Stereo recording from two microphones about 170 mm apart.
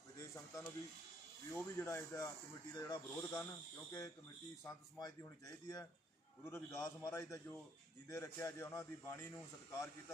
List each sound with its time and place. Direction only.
0.2 s a sound: 15° left (ahead or behind)
1.5 s a man's voice: 15° left (ahead or behind)
4.9 s a man's voice: 20° left (ahead or behind)